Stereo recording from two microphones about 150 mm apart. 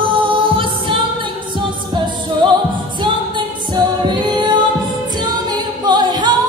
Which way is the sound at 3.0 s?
30° right (ahead or behind).